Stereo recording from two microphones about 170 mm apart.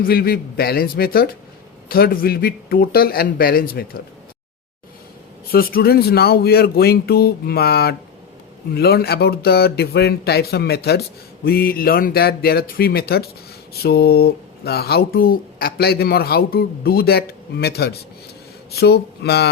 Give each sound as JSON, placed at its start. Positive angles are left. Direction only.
{"t": 0.0, "sound": "speech", "side_deg": 65}
{"t": 5.5, "sound": "speech", "side_deg": 60}